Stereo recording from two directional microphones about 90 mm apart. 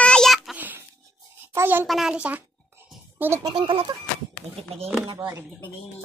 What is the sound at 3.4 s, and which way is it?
Speech, 60° right (ahead or behind).